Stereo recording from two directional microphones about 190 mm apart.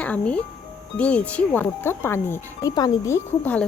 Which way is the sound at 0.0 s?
5° left (ahead or behind).